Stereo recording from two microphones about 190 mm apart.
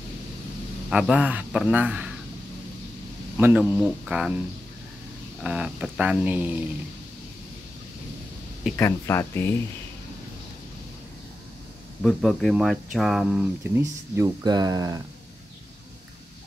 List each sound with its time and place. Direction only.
0.8 s speech: 5° right (ahead or behind)
3.3 s speech: 10° right (ahead or behind)
5.4 s speech: 5° right (ahead or behind)
8.7 s speech: 15° left (ahead or behind)
12.0 s speech: centre (ahead or behind)
13.7 s speech: 15° right (ahead or behind)